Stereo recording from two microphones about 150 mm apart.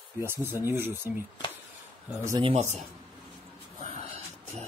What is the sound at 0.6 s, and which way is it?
Speech, 15° right (ahead or behind).